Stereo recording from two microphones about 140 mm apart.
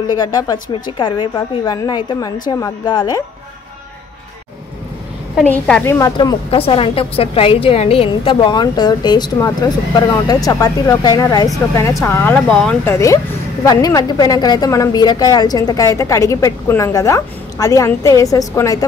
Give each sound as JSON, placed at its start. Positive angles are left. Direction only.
{"t": 0.1, "sound": "a woman's voice", "side_deg": 30}
{"t": 5.4, "sound": "speech", "side_deg": 10}
{"t": 5.9, "sound": "a woman's voice", "side_deg": 25}
{"t": 6.5, "sound": "a woman's voice", "side_deg": 40}
{"t": 12.9, "sound": "a woman's voice", "side_deg": 20}